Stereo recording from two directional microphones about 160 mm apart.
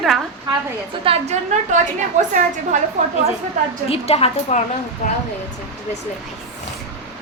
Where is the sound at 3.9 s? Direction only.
40° left (ahead or behind).